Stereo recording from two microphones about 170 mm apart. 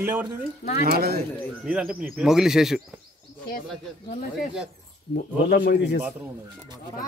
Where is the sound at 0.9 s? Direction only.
65° right (ahead or behind).